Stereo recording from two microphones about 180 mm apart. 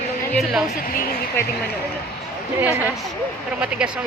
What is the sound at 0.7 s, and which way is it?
Speech, 55° left (ahead or behind).